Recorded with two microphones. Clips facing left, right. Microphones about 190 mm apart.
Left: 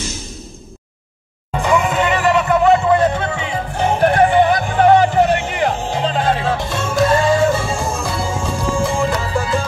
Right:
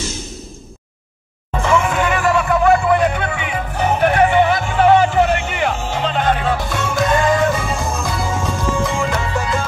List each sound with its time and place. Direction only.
1.5 s music: 15° left (ahead or behind); by 9.5 s 35° left (ahead or behind)